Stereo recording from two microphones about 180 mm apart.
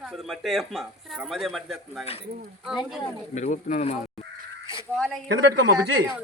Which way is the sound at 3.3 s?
40° left (ahead or behind).